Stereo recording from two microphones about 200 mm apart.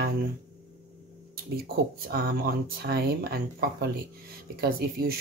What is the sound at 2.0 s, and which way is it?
Speech, 50° right (ahead or behind).